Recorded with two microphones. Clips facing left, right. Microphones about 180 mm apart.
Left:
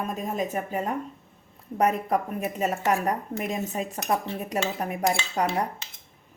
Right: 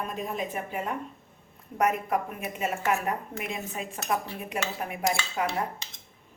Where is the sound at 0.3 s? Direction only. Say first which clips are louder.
Left 4 dB; 40° left (ahead or behind).